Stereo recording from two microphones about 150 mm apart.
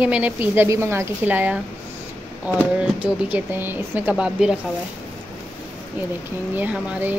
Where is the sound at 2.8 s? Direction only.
10° right (ahead or behind).